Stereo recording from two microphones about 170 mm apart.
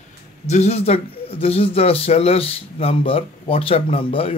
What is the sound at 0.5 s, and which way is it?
Speech, 40° left (ahead or behind).